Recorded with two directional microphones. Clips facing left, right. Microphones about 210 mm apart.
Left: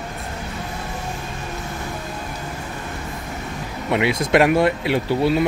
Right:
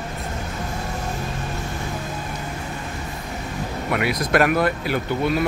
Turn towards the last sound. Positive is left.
turn(degrees=25)  # may be behind; listen again after turning